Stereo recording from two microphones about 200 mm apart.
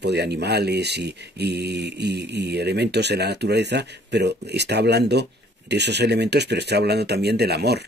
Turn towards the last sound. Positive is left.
turn(degrees=-55)  # may be behind; listen again after turning